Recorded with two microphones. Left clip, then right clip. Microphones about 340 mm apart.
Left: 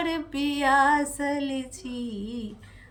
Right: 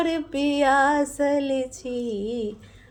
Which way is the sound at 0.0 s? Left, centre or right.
Centre.